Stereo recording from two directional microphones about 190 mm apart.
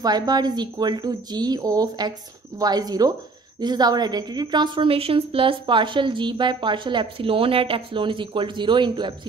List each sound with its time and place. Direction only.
0.0 s a woman's voice: 20° right (ahead or behind)